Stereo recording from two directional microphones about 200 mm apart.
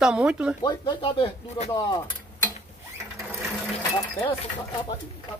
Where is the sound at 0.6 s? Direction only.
20° left (ahead or behind).